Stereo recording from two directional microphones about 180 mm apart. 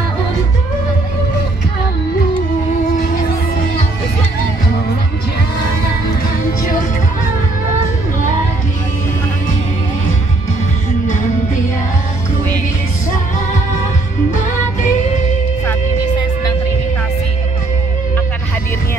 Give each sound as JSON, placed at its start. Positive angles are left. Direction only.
{"t": 14.3, "sound": "music", "side_deg": 45}